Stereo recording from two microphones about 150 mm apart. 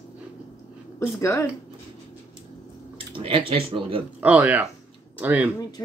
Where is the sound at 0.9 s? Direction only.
20° left (ahead or behind).